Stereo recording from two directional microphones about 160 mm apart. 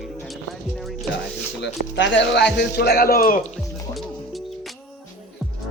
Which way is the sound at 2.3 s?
90° left.